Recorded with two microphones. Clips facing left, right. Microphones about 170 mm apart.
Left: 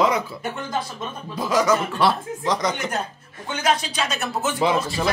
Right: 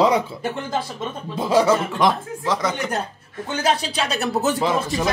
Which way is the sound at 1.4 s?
30° right (ahead or behind).